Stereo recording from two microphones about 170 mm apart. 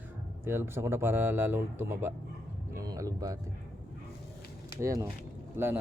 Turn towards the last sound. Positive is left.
turn(degrees=-15)  # may be behind; listen again after turning